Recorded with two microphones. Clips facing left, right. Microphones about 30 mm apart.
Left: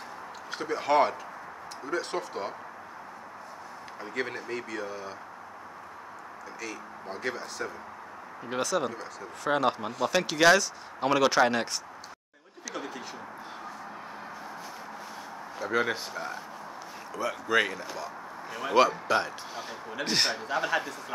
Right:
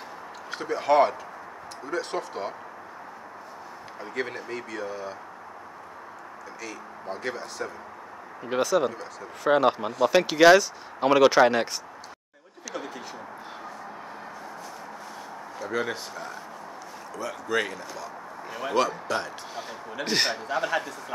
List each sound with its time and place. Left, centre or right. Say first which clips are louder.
0.5 s a man's voice: right 3 dB; centre
4.0 s a man's voice: right 1 dB; centre
6.6 s a man's voice: right 1 dB; centre
12.7 s a sound: right 2 dB; centre
15.6 s a man's voice: left 1 dB; centre
18.8 s a man's voice: left 3 dB; centre